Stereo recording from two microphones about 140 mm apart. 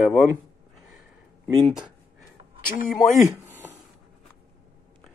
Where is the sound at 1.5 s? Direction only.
Centre (ahead or behind).